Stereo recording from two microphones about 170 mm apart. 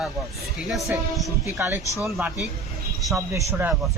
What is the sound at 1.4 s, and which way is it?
Speech, 15° right (ahead or behind).